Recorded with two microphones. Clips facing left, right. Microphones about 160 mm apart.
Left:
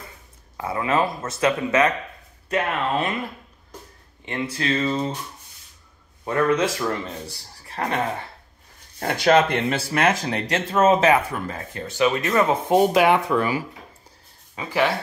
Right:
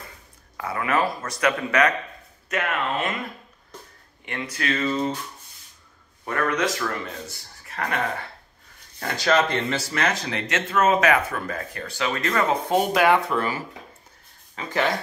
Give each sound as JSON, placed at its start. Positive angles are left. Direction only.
{"t": 0.6, "sound": "speech", "side_deg": 25}
{"t": 4.3, "sound": "speech", "side_deg": 25}
{"t": 6.2, "sound": "speech", "side_deg": 25}
{"t": 9.0, "sound": "speech", "side_deg": 55}
{"t": 10.3, "sound": "speech", "side_deg": 35}